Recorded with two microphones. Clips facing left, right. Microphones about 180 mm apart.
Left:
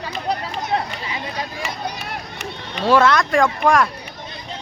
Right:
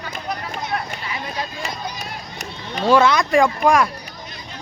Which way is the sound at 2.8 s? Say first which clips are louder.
Even; centre (ahead or behind).